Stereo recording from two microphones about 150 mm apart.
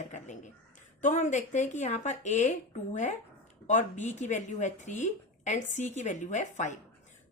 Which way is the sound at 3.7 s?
55° left (ahead or behind).